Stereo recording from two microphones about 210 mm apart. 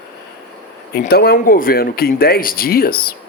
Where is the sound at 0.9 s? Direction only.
45° left (ahead or behind).